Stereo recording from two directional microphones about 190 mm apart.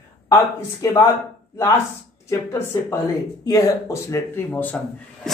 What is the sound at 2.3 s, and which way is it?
Speech, 15° left (ahead or behind).